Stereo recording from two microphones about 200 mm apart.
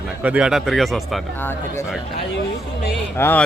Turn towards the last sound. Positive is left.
turn(degrees=10)  # may be behind; listen again after turning